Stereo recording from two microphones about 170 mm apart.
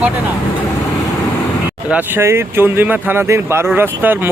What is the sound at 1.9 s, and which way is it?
Speech, 10° right (ahead or behind).